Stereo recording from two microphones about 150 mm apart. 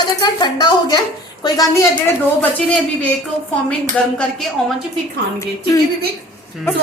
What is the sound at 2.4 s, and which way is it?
Speech, 10° left (ahead or behind).